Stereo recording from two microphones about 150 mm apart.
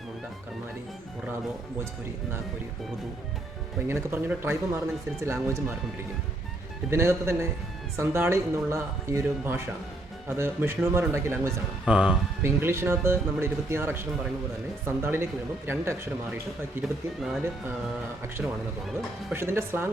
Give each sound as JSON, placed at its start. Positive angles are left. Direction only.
{"t": 3.8, "sound": "speech", "side_deg": -15}
{"t": 6.9, "sound": "speech", "side_deg": -15}
{"t": 11.9, "sound": "speech", "side_deg": -5}
{"t": 12.4, "sound": "speech", "side_deg": -15}
{"t": 18.4, "sound": "speech", "side_deg": -5}